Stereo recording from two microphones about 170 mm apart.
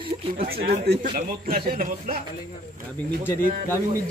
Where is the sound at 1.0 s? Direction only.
55° right (ahead or behind).